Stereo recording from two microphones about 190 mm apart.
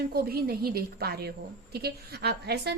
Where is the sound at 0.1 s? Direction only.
55° right (ahead or behind).